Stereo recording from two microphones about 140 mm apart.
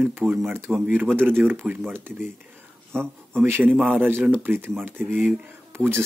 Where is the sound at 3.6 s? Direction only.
10° right (ahead or behind).